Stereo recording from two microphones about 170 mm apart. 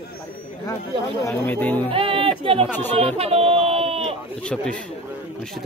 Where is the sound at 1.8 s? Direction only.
30° right (ahead or behind).